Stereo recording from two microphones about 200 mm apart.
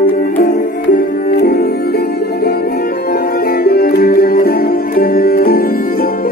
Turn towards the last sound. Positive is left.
turn(degrees=45)  # may be behind; listen again after turning